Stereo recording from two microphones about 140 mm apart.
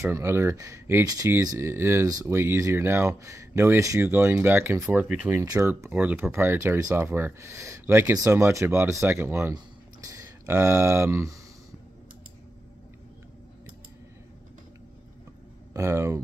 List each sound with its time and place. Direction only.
0.0 s speech: 20° right (ahead or behind)
5.3 s speech: 20° right (ahead or behind)
15.7 s speech: 20° right (ahead or behind)